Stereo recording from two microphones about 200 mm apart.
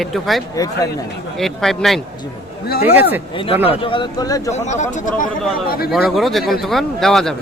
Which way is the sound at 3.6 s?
25° left (ahead or behind).